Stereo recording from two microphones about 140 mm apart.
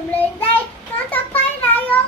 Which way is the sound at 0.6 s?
15° left (ahead or behind).